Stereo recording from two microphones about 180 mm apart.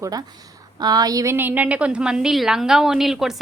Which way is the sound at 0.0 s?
20° right (ahead or behind).